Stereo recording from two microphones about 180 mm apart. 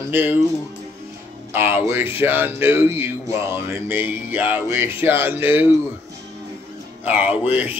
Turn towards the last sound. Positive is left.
turn(degrees=-10)  # may be behind; listen again after turning